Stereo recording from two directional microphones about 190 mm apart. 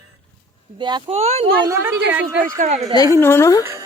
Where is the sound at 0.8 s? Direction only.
25° right (ahead or behind).